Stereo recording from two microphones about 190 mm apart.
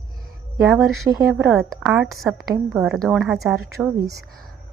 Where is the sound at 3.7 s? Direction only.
15° right (ahead or behind).